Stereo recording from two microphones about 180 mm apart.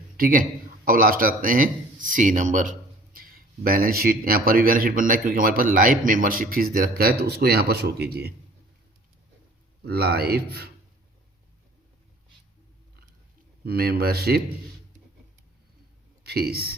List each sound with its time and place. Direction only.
0.2 s speech: 50° right (ahead or behind)
9.8 s speech: 60° right (ahead or behind)
13.7 s speech: 60° right (ahead or behind)
16.2 s speech: 60° right (ahead or behind)